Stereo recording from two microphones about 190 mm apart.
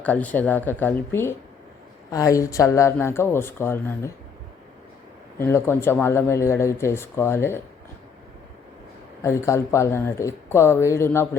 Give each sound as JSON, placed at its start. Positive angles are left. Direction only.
{"t": 0.0, "sound": "speech", "side_deg": 10}
{"t": 5.4, "sound": "speech", "side_deg": 10}
{"t": 9.2, "sound": "speech", "side_deg": 15}